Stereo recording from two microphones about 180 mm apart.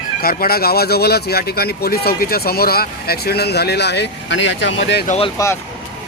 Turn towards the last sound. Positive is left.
turn(degrees=15)  # may be behind; listen again after turning